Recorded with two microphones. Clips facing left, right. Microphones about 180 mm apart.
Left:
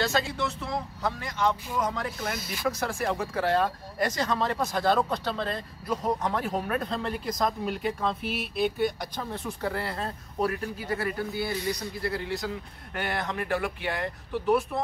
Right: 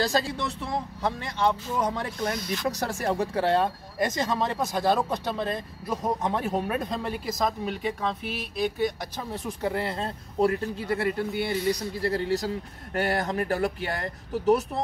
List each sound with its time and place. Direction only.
0.0 s speech: 35° right (ahead or behind)
2.3 s speech: 5° left (ahead or behind)
2.8 s speech: 40° right (ahead or behind); by 8.2 s centre (ahead or behind)
9.3 s speech: 20° right (ahead or behind); by 14.8 s 40° right (ahead or behind)